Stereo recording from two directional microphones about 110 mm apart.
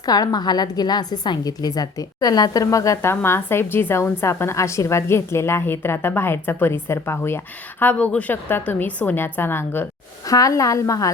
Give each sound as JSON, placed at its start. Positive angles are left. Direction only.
{"t": 0.0, "sound": "a woman's voice", "side_deg": 35}
{"t": 10.2, "sound": "a woman's voice", "side_deg": 30}